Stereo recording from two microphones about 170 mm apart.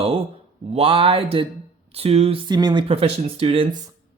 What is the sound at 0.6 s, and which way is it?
Speech, 35° right (ahead or behind).